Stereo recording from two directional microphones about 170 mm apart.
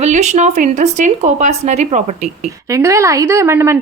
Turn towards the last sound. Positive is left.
turn(degrees=-15)  # may be behind; listen again after turning